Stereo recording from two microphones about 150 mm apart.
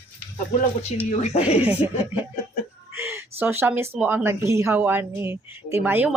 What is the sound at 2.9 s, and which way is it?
Speech, 15° right (ahead or behind).